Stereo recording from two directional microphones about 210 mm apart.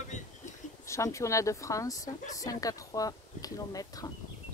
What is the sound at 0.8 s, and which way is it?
Speech, 15° left (ahead or behind).